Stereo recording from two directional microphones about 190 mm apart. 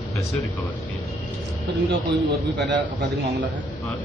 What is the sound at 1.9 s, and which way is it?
Speech, 55° right (ahead or behind).